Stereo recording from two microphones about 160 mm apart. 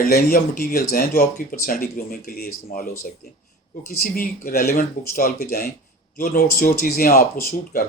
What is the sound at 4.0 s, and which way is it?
Speech, 60° left (ahead or behind).